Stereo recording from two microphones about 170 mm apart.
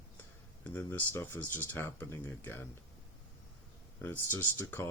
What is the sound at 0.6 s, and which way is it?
Speech, 10° left (ahead or behind).